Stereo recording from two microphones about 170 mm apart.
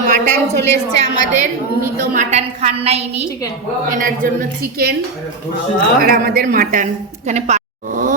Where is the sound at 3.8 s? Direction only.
55° right (ahead or behind).